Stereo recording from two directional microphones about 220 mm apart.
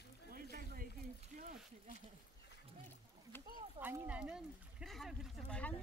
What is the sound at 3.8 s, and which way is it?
Speech, 10° right (ahead or behind).